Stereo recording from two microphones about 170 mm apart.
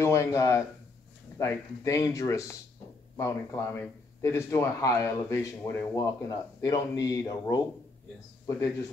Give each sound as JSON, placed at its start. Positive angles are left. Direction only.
{"t": 0.0, "sound": "speech", "side_deg": 15}